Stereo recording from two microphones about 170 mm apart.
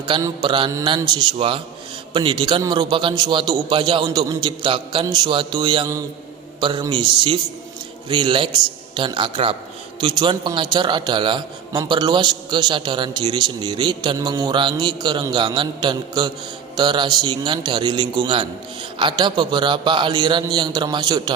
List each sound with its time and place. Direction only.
0.0 s a man's voice: 25° right (ahead or behind)